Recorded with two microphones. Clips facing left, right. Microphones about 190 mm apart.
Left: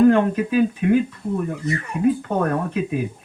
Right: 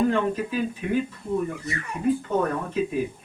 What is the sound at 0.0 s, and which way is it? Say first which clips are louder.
Speech: left 8 dB; 60° left (ahead or behind).